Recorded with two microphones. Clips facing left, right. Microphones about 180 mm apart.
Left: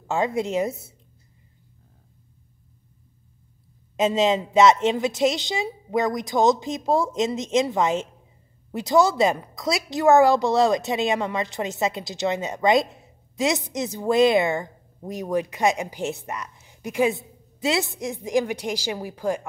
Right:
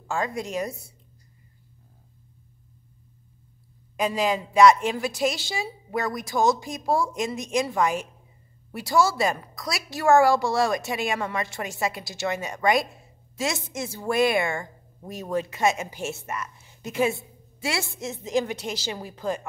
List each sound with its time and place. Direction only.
0.0 s a woman's voice: 20° left (ahead or behind)
3.9 s a woman's voice: 25° left (ahead or behind)